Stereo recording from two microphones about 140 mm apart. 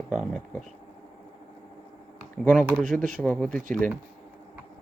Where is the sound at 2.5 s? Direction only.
5° right (ahead or behind).